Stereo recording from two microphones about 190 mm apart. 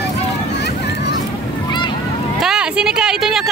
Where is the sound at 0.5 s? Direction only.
60° left (ahead or behind).